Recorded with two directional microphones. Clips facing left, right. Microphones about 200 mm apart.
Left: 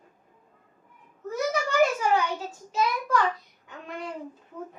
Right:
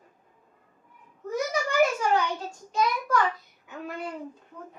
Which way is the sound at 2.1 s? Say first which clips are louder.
Even; 5° left (ahead or behind).